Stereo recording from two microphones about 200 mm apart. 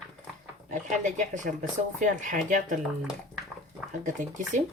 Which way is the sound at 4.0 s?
40° right (ahead or behind).